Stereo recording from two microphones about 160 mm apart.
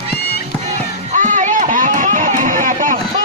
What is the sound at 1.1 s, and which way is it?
Run, 50° right (ahead or behind).